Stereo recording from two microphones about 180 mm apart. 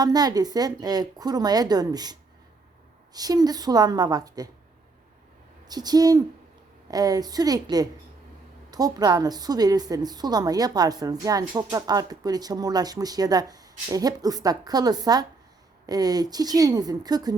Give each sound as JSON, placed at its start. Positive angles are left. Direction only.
{"t": 0.0, "sound": "a woman's voice", "side_deg": -20}
{"t": 5.6, "sound": "a woman's voice", "side_deg": -20}